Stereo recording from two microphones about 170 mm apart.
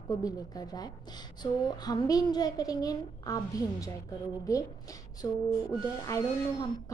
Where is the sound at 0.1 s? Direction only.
20° left (ahead or behind).